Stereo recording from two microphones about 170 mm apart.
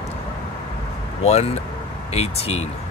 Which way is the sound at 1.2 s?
40° left (ahead or behind).